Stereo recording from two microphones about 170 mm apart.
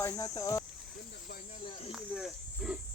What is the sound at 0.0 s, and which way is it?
Speech, 20° left (ahead or behind).